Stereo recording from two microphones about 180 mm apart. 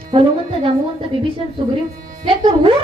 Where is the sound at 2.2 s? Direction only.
30° right (ahead or behind).